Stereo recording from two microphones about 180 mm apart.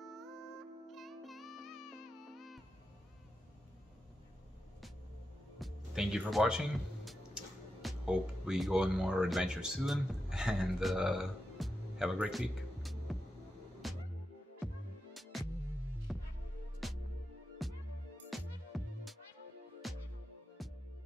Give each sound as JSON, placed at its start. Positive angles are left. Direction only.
{"t": 0.8, "sound": "music", "side_deg": 0}
{"t": 5.6, "sound": "music", "side_deg": 0}
{"t": 7.1, "sound": "speech", "side_deg": 0}
{"t": 13.8, "sound": "music", "side_deg": 0}
{"t": 15.3, "sound": "music", "side_deg": 0}